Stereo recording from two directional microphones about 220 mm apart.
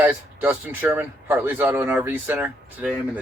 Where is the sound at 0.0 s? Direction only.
10° right (ahead or behind).